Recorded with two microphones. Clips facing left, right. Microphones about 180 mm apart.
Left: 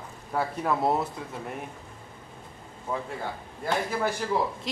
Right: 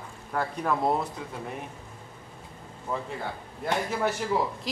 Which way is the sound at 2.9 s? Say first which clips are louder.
Even; 5° left (ahead or behind).